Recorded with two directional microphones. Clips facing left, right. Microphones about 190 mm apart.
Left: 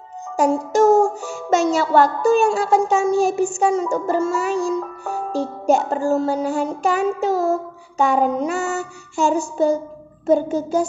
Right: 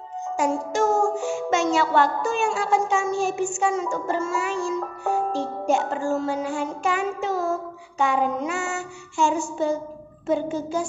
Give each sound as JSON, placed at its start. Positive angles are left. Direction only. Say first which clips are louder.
{"t": 0.4, "sound": "music", "louder": "left 7 dB", "side_deg": 35}